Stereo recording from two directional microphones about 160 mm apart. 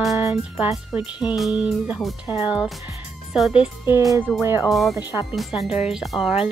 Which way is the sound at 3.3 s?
Centre (ahead or behind).